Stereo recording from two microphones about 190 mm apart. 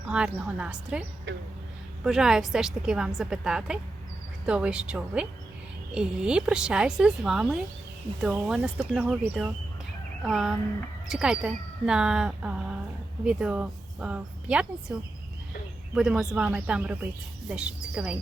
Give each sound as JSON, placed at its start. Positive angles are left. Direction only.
{"t": 0.1, "sound": "speech", "side_deg": -5}
{"t": 1.3, "sound": "speech", "side_deg": -70}
{"t": 2.0, "sound": "speech", "side_deg": -5}
{"t": 16.0, "sound": "speech", "side_deg": 0}